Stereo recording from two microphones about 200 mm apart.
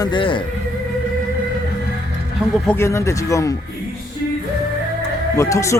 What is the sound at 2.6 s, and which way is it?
Speech, 10° left (ahead or behind).